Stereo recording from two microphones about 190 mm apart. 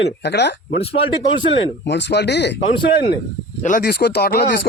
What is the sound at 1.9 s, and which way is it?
Speech, 65° left (ahead or behind).